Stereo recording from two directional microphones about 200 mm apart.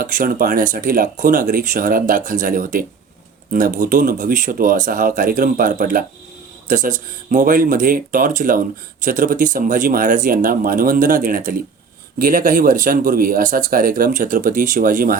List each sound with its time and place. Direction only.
0.0 s speech: 45° right (ahead or behind)